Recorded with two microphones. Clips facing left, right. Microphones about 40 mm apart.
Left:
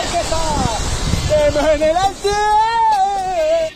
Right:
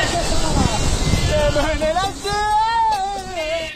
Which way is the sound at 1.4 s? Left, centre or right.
Left.